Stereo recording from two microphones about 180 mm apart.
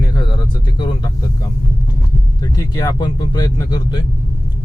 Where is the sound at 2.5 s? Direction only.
20° left (ahead or behind).